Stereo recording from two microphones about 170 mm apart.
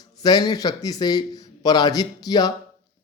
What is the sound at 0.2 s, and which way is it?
Speech, 25° left (ahead or behind).